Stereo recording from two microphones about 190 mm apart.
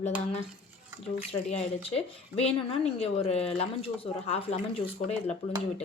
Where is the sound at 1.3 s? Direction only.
30° left (ahead or behind).